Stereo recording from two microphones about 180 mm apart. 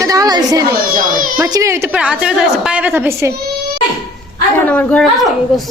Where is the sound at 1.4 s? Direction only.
15° right (ahead or behind).